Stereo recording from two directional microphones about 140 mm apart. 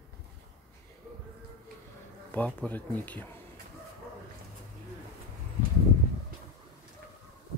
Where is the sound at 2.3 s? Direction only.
10° left (ahead or behind).